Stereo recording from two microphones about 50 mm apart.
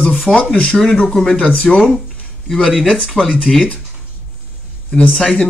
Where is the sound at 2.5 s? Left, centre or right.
Centre.